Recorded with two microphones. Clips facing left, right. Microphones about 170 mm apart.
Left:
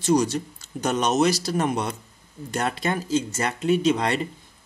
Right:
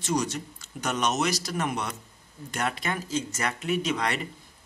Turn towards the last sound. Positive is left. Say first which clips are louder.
# left 6 dB
turn(degrees=30)  # may be behind; listen again after turning